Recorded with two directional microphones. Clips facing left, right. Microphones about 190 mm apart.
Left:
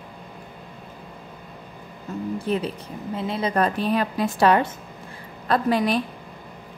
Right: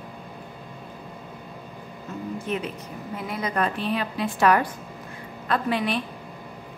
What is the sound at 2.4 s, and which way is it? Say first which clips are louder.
A woman's voice: left 4 dB; 35° left (ahead or behind).